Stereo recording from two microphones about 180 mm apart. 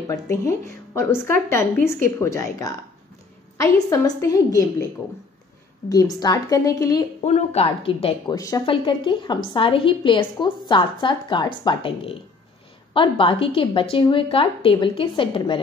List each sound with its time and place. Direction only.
0.1 s a woman's voice: 15° left (ahead or behind)
4.2 s a woman's voice: 20° left (ahead or behind)
5.9 s a woman's voice: 20° left (ahead or behind)
7.2 s speech: 35° left (ahead or behind)
8.4 s a woman's voice: 20° left (ahead or behind)